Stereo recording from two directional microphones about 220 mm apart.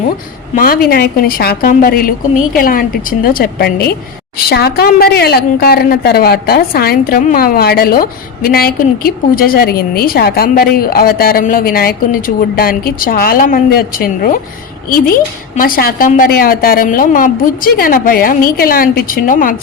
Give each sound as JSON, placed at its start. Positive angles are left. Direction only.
{"t": 0.5, "sound": "a woman's voice", "side_deg": 40}
{"t": 15.5, "sound": "a woman's voice", "side_deg": 40}